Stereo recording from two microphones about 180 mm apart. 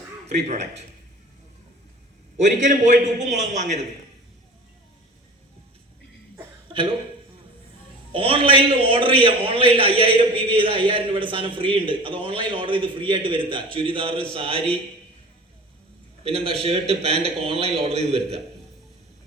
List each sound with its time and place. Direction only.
0.3 s a man's voice: 40° right (ahead or behind)
2.4 s a man's voice: 40° right (ahead or behind)
8.1 s a man's voice: 30° right (ahead or behind)
16.2 s a man's voice: 30° right (ahead or behind)